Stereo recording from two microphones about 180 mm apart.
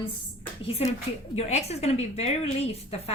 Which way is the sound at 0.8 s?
35° left (ahead or behind).